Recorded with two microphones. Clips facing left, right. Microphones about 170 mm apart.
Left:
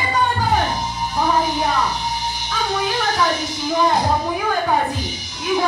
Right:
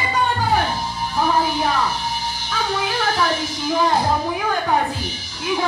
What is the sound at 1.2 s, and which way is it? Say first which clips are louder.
Music: even; 15° left (ahead or behind).